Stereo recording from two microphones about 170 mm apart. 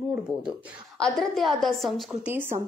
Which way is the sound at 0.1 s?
5° right (ahead or behind).